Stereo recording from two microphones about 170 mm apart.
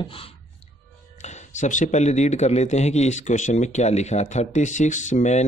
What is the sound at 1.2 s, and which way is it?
Speech, 45° left (ahead or behind).